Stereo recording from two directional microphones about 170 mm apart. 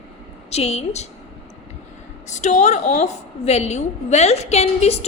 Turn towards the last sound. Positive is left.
turn(degrees=40)  # may be behind; listen again after turning